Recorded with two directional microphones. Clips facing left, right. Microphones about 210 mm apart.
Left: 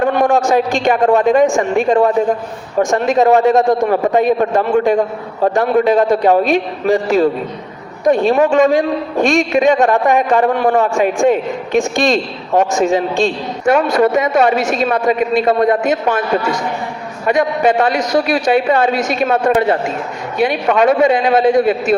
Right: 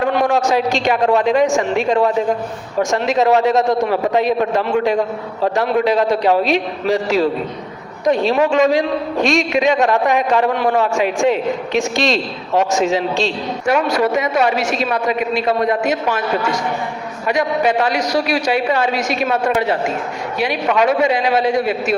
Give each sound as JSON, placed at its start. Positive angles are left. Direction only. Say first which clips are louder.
{"t": 0.0, "sound": "a man's voice", "louder": "left 3 dB", "side_deg": 50}
{"t": 17.2, "sound": "a man's voice", "louder": "left 3 dB", "side_deg": 50}